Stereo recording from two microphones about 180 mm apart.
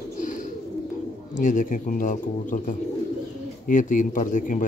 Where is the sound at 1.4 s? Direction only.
45° left (ahead or behind).